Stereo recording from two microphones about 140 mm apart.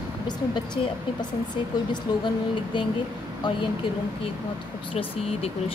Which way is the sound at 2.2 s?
35° left (ahead or behind).